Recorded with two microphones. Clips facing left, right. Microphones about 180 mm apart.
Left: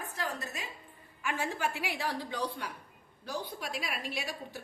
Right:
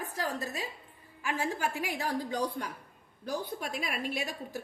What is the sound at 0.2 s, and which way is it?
A woman's voice, 35° right (ahead or behind).